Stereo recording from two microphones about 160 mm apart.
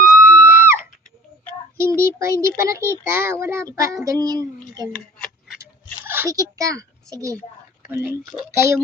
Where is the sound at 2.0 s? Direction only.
15° right (ahead or behind).